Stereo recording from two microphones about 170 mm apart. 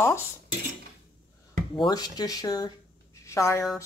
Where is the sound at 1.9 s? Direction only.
20° left (ahead or behind).